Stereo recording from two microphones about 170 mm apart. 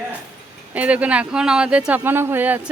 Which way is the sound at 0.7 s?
5° right (ahead or behind).